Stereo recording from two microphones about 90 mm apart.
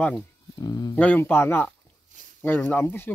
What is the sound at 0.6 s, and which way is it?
Speech, 45° left (ahead or behind).